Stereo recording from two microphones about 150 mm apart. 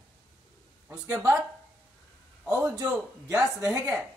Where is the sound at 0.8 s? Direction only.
10° right (ahead or behind).